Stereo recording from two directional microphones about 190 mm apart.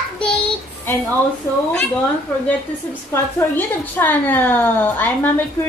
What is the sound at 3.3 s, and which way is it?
A woman's voice, 10° left (ahead or behind).